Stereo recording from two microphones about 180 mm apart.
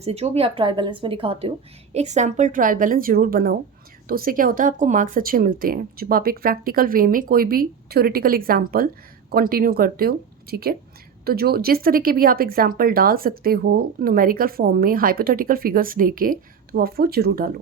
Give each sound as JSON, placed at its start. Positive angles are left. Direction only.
{"t": 0.0, "sound": "a woman's voice", "side_deg": -35}